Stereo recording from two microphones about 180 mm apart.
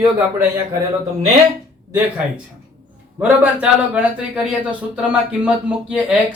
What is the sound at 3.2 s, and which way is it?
A man's voice, 5° right (ahead or behind).